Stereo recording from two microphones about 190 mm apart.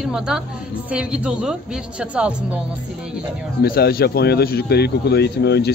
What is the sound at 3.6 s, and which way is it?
Speech, 55° left (ahead or behind).